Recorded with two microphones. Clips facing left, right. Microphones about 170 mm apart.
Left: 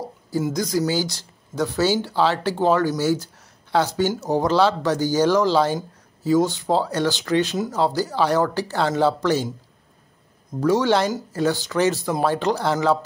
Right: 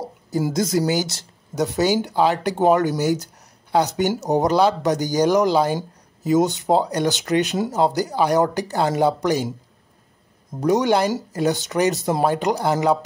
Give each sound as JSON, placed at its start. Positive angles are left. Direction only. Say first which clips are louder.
{"t": 0.4, "sound": "speech", "louder": "right 2 dB", "side_deg": -25}
{"t": 10.6, "sound": "speech", "louder": "right 1 dB", "side_deg": -15}